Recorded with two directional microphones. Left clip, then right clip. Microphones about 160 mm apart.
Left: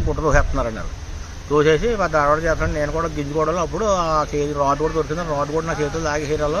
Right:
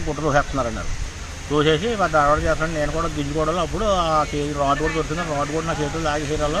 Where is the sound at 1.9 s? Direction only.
20° left (ahead or behind).